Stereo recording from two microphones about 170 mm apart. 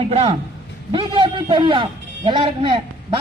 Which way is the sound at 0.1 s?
40° right (ahead or behind).